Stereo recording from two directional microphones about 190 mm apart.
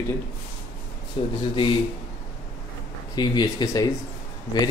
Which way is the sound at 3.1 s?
20° left (ahead or behind).